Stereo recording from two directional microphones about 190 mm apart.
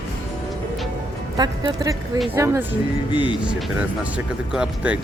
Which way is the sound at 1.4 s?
20° right (ahead or behind).